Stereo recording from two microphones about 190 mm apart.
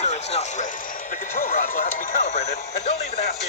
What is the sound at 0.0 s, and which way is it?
Speech, 35° left (ahead or behind).